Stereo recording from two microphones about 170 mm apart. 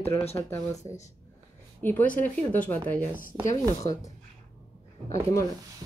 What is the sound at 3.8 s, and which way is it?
Speech, 20° left (ahead or behind).